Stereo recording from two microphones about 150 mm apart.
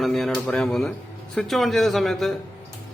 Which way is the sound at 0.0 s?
Centre (ahead or behind).